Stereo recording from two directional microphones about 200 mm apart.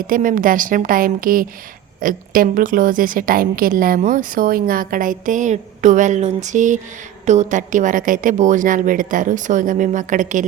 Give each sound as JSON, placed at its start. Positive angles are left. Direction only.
{"t": 0.1, "sound": "a woman's voice", "side_deg": -45}